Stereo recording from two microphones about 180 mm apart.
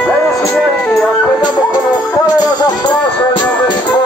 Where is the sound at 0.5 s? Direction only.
Centre (ahead or behind).